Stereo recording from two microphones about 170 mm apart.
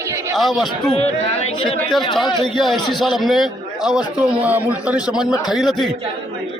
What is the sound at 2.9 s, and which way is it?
A man's voice, centre (ahead or behind).